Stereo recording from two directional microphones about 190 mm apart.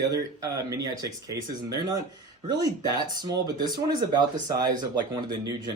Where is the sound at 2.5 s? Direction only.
20° right (ahead or behind).